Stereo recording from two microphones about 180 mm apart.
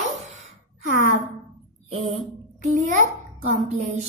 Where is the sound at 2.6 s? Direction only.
40° right (ahead or behind).